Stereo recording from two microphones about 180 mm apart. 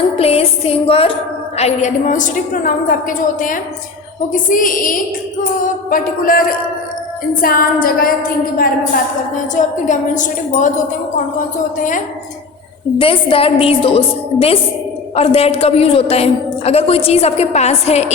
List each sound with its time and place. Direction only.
0.2 s a woman's voice: 35° left (ahead or behind); by 6.4 s 50° left (ahead or behind)
7.4 s a woman's voice: 55° left (ahead or behind)
9.6 s a woman's voice: 45° left (ahead or behind)
11.8 s a woman's voice: 45° left (ahead or behind)
13.0 s a woman's voice: 30° left (ahead or behind)